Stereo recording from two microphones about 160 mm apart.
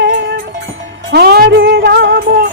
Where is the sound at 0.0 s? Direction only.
90° right.